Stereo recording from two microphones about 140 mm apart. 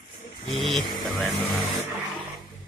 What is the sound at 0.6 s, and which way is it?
Speech, centre (ahead or behind).